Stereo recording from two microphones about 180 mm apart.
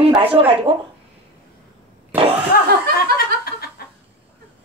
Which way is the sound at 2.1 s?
10° right (ahead or behind).